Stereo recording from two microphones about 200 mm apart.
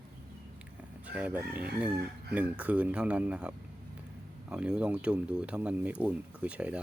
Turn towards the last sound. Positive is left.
turn(degrees=-5)  # may be behind; listen again after turning